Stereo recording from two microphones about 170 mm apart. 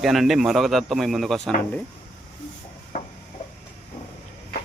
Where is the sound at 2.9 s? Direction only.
50° left (ahead or behind).